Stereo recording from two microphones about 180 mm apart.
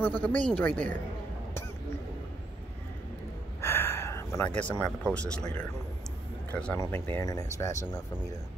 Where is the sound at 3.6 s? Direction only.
15° left (ahead or behind).